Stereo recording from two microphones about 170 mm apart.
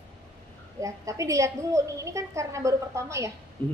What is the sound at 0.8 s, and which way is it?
A woman's voice, 20° right (ahead or behind).